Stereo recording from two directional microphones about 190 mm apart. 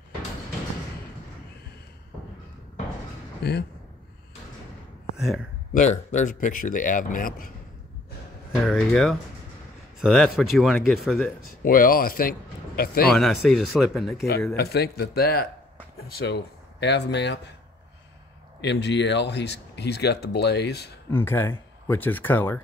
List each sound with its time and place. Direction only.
3.4 s speech: 55° left (ahead or behind)
5.1 s speech: centre (ahead or behind)
5.7 s a man's voice: 40° left (ahead or behind)
8.6 s speech: centre (ahead or behind)
11.6 s speech: 50° left (ahead or behind)
13.1 s speech: centre (ahead or behind)
14.1 s speech: 55° left (ahead or behind)
18.6 s speech: 65° left (ahead or behind)
21.1 s speech: 10° left (ahead or behind)